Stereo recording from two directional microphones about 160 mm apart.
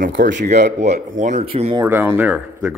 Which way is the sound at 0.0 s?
55° right (ahead or behind).